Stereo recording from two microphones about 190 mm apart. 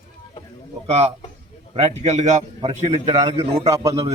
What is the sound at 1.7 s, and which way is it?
A man's voice, 35° right (ahead or behind).